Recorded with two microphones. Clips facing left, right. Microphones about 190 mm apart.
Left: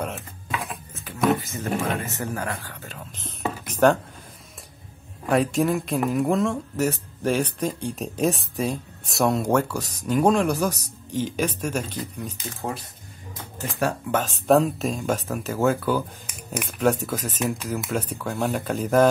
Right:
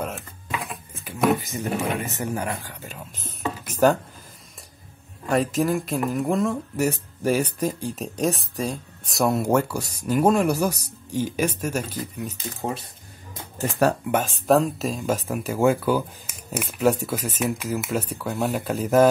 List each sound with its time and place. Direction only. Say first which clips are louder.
0.0 s a sound: even; centre (ahead or behind)
1.4 s speech: even; 15° right (ahead or behind)
5.3 s speech: left 1 dB; centre (ahead or behind)
14.5 s speech: left 1 dB; centre (ahead or behind)